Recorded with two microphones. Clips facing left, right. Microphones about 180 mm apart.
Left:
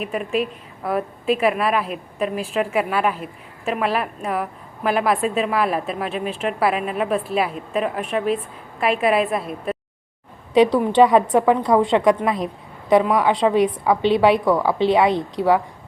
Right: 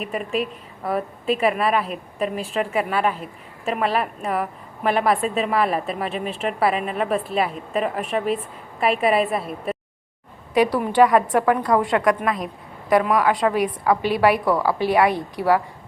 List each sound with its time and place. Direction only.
0.0 s a woman's voice: centre (ahead or behind)
10.7 s a woman's voice: 20° left (ahead or behind)
14.4 s a woman's voice: 5° right (ahead or behind)
14.8 s a woman's voice: 20° left (ahead or behind)